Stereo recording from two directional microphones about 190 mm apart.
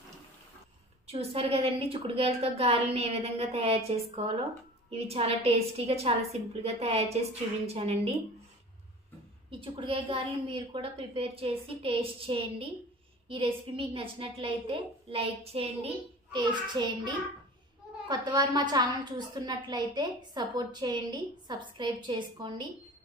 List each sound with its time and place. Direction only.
1.0 s a woman's voice: 30° right (ahead or behind)
9.5 s a woman's voice: 30° right (ahead or behind)